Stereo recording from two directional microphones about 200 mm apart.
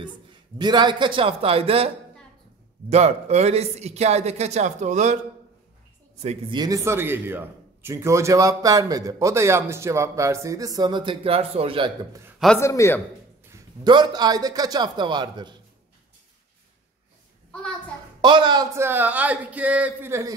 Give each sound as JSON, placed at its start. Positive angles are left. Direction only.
{"t": 0.6, "sound": "a man's voice", "side_deg": -20}
{"t": 2.9, "sound": "speech", "side_deg": -30}
{"t": 6.1, "sound": "speech", "side_deg": -35}
{"t": 6.6, "sound": "a man's voice", "side_deg": -15}
{"t": 12.5, "sound": "a man's voice", "side_deg": 15}
{"t": 13.5, "sound": "a man's voice", "side_deg": -20}
{"t": 18.2, "sound": "a man's voice", "side_deg": -25}
{"t": 18.8, "sound": "a man's voice", "side_deg": -10}